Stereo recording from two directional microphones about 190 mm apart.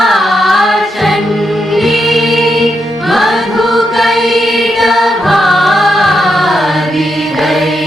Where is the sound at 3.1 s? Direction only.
Centre (ahead or behind).